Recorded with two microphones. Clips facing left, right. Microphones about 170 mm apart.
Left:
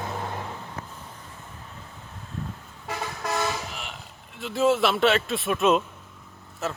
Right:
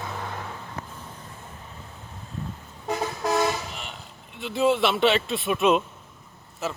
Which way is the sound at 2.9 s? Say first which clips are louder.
Right 5 dB; 15° right (ahead or behind).